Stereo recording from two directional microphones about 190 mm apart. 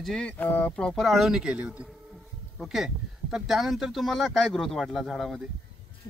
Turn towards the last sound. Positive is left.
turn(degrees=0)  # may be behind; listen again after turning